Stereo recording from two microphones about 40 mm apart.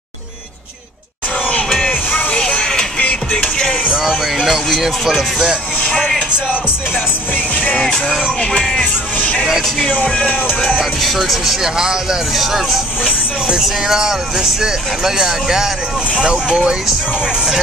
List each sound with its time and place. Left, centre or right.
2.6 s music: centre
3.0 s music: left
3.5 s music: centre
4.0 s speech: centre
8.1 s speech: centre
8.8 s speech: left
9.5 s speech: centre
9.9 s speech: left
10.8 s speech: centre
11.1 s speech: centre
12.3 s speech: centre
17.2 s music: right